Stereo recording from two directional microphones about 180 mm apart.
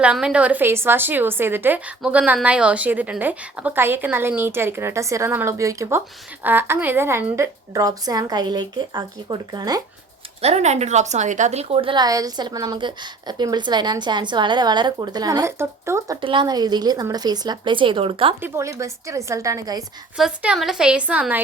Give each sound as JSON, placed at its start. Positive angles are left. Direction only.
{"t": 0.0, "sound": "a woman's voice", "side_deg": -5}
{"t": 10.4, "sound": "a woman's voice", "side_deg": -40}
{"t": 16.2, "sound": "a woman's voice", "side_deg": -25}
{"t": 18.4, "sound": "a woman's voice", "side_deg": -15}
{"t": 20.1, "sound": "a woman's voice", "side_deg": -5}